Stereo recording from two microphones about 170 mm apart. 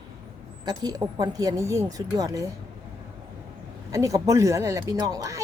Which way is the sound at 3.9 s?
20° right (ahead or behind).